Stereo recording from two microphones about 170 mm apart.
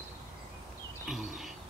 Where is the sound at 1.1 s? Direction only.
Centre (ahead or behind).